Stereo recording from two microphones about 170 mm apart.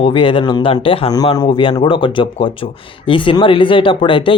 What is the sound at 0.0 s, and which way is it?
Speech, 30° left (ahead or behind).